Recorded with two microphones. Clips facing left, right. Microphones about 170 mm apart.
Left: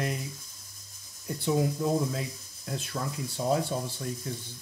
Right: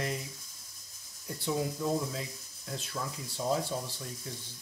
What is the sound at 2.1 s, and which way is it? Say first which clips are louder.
Speech: left 4 dB; 55° left (ahead or behind).